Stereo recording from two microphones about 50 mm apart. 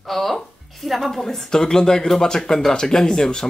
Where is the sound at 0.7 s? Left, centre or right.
Centre.